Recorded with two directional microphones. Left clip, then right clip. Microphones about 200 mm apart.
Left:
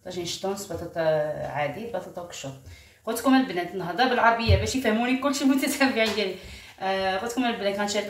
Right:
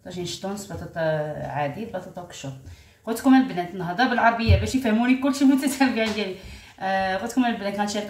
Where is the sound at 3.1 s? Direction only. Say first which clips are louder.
Right 3 dB; 15° left (ahead or behind).